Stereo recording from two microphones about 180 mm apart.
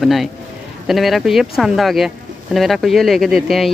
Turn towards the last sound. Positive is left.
turn(degrees=0)  # may be behind; listen again after turning